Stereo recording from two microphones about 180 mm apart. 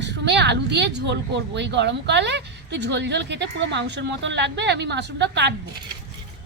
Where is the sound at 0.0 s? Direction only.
70° right (ahead or behind).